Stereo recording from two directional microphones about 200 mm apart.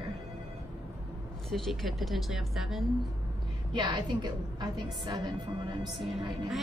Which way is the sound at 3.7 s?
20° right (ahead or behind).